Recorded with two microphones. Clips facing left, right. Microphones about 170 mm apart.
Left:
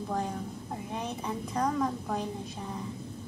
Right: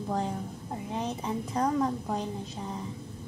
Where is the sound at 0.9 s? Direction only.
25° right (ahead or behind).